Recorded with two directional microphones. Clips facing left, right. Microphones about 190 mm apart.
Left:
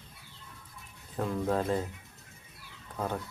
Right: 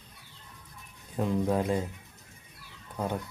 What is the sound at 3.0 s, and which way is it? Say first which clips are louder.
Speech: right 2 dB; 15° right (ahead or behind).